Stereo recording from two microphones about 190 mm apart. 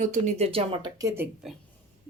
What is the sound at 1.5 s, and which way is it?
Speech, centre (ahead or behind).